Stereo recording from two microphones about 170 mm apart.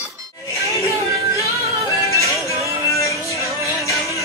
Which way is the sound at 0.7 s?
20° right (ahead or behind).